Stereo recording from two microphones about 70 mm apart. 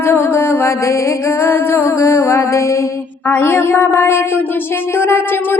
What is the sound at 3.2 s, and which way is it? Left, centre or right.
Music, left.